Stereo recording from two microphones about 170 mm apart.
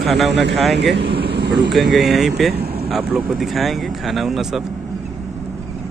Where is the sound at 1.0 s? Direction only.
80° right.